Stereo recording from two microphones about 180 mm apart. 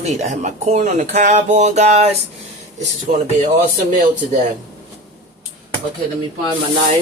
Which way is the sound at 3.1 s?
45° right (ahead or behind).